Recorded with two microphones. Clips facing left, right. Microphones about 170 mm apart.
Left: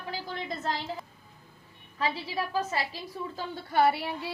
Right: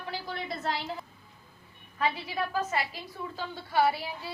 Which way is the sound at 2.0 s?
30° left (ahead or behind).